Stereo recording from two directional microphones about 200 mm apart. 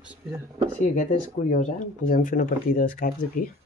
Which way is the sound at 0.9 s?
40° left (ahead or behind).